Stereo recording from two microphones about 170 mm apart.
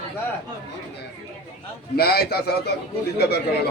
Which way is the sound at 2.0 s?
70° left (ahead or behind).